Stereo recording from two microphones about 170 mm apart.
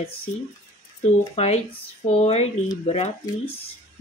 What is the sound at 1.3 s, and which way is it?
Speech, 40° left (ahead or behind).